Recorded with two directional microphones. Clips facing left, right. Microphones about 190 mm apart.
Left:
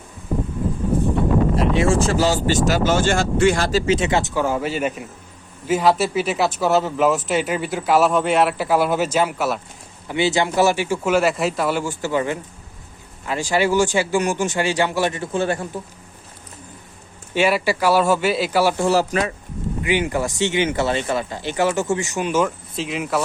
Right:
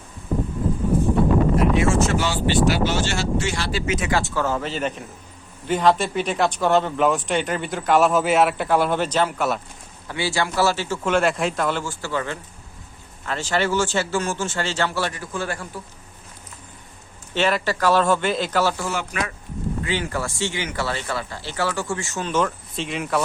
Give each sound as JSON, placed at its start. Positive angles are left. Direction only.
{"t": 1.8, "sound": "speech", "side_deg": 30}
{"t": 10.1, "sound": "speech", "side_deg": 20}
{"t": 17.3, "sound": "speech", "side_deg": 10}
{"t": 18.8, "sound": "speech", "side_deg": 35}
{"t": 19.8, "sound": "speech", "side_deg": 15}